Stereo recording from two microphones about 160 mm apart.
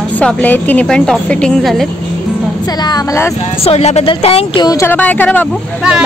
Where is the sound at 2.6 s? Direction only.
25° left (ahead or behind).